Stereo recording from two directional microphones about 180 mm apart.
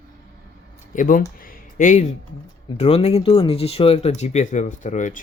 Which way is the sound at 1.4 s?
45° left (ahead or behind).